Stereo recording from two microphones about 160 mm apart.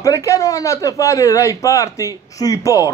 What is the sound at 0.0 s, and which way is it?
A man's voice, 20° left (ahead or behind).